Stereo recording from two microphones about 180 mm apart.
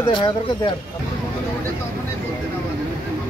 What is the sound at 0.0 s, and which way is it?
Speech, 25° left (ahead or behind).